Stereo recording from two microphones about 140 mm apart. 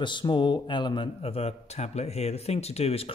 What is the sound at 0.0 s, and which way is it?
A man's voice, 35° left (ahead or behind).